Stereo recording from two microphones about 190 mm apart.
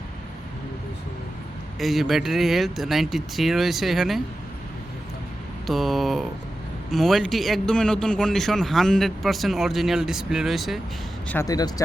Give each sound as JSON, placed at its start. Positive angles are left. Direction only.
{"t": 1.8, "sound": "a man's voice", "side_deg": 0}
{"t": 5.6, "sound": "a man's voice", "side_deg": 0}
{"t": 11.3, "sound": "speech", "side_deg": 15}